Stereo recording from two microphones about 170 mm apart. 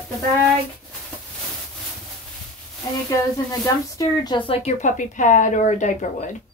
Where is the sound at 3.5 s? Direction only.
20° left (ahead or behind).